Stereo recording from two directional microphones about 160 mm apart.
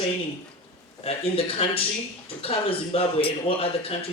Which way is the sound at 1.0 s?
35° left (ahead or behind).